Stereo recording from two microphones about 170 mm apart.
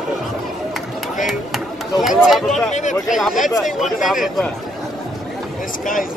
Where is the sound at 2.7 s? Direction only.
45° left (ahead or behind).